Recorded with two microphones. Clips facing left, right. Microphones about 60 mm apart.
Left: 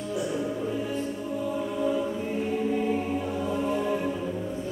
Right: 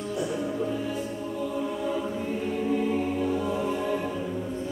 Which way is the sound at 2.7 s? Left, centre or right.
Centre.